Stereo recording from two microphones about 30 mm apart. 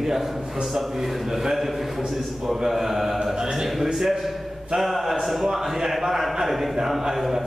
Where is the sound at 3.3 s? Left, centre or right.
Right.